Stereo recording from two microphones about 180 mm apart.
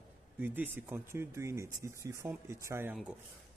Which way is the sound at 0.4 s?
10° right (ahead or behind).